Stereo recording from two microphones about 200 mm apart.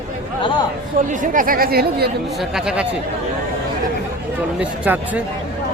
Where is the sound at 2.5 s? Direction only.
5° right (ahead or behind).